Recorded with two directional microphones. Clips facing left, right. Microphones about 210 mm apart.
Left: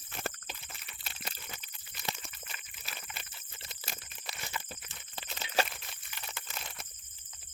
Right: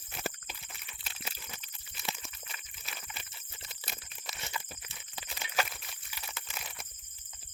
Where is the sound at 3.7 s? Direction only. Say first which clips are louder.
Left 1 dB; centre (ahead or behind).